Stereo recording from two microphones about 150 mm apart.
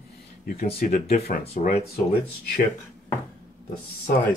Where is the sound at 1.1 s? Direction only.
75° left (ahead or behind).